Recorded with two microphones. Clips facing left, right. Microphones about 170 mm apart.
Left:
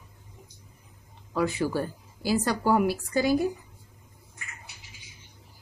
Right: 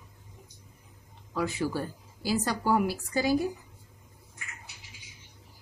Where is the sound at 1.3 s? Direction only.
60° left (ahead or behind).